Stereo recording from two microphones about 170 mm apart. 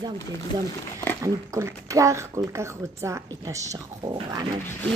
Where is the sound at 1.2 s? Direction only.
20° right (ahead or behind).